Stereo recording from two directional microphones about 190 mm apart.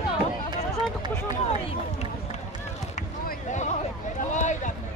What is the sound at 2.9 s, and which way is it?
Basketball bounce, 45° left (ahead or behind).